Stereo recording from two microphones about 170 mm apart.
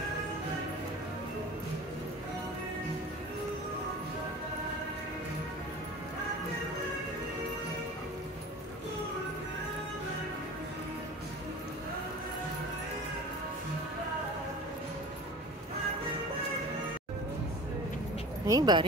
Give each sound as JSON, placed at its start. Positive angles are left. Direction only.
{"t": 18.5, "sound": "speech", "side_deg": -25}